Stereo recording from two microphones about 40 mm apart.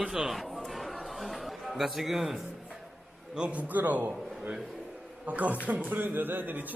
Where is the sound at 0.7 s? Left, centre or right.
Centre.